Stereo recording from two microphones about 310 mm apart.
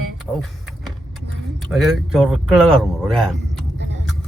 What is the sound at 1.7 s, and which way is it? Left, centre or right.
Speech, centre.